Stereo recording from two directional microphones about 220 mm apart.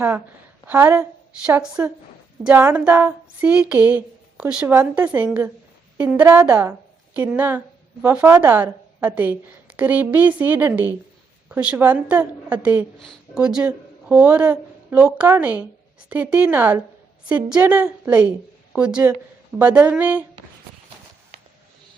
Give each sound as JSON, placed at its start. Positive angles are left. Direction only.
{"t": 0.7, "sound": "female singing", "side_deg": -5}
{"t": 1.5, "sound": "speech", "side_deg": -5}
{"t": 2.4, "sound": "female singing", "side_deg": -10}
{"t": 6.1, "sound": "a woman's voice", "side_deg": -10}
{"t": 8.0, "sound": "female singing", "side_deg": -10}
{"t": 11.4, "sound": "a woman's voice", "side_deg": -5}
{"t": 16.0, "sound": "female singing", "side_deg": -5}
{"t": 18.7, "sound": "speech", "side_deg": -5}
{"t": 19.5, "sound": "female singing", "side_deg": -5}